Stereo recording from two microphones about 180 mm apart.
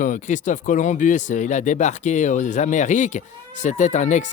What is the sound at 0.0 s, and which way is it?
A man's voice, 45° left (ahead or behind).